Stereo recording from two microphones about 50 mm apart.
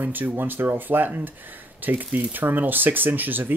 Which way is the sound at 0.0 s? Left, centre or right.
Right.